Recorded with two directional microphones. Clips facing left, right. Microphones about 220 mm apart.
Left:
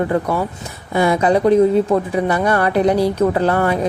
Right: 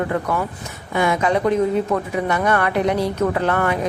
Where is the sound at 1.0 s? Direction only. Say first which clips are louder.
Left 4 dB; 35° left (ahead or behind).